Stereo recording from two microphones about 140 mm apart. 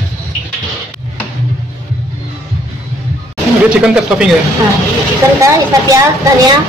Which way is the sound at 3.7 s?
5° right (ahead or behind).